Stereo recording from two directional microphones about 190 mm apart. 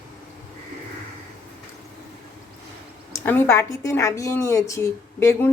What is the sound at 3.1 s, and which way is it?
A woman's voice, 15° left (ahead or behind).